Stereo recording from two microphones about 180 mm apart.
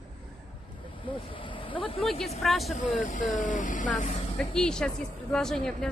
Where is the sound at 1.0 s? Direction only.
30° left (ahead or behind).